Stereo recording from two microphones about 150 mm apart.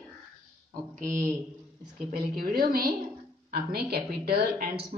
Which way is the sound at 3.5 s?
90° right.